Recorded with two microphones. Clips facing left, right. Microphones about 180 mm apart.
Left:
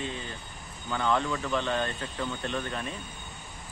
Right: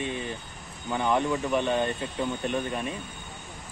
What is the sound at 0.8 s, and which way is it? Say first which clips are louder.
Speech: right 3 dB; 15° right (ahead or behind).